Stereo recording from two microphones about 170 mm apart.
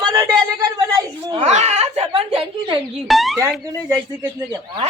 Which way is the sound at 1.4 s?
40° right (ahead or behind).